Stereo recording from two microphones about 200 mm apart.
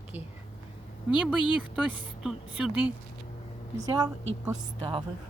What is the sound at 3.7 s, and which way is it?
A woman's voice, 20° right (ahead or behind).